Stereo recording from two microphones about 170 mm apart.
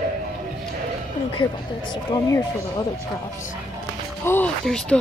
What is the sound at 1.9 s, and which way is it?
Speech, 25° left (ahead or behind).